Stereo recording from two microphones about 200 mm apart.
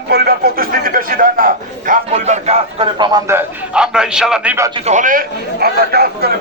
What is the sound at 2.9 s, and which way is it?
A man's voice, 20° right (ahead or behind).